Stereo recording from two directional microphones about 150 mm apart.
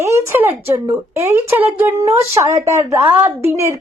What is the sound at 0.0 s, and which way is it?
A woman's voice, 20° right (ahead or behind).